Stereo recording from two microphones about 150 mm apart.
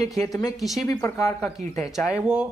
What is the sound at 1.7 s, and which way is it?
Speech, 5° right (ahead or behind).